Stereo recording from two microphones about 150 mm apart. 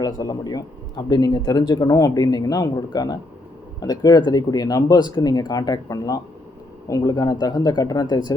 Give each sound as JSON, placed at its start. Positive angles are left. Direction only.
{"t": 0.0, "sound": "speech", "side_deg": 25}